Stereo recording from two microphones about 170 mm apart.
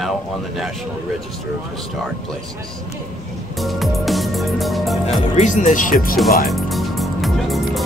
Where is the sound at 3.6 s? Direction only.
Centre (ahead or behind).